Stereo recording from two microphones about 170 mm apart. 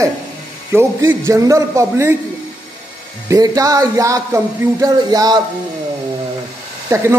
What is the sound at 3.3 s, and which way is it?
Speech, 20° right (ahead or behind).